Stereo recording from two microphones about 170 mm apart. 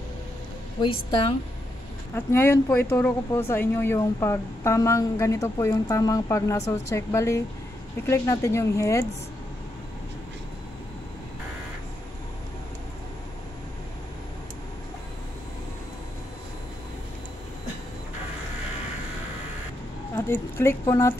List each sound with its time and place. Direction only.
2.1 s speech: 15° left (ahead or behind)
20.2 s speech: 15° left (ahead or behind)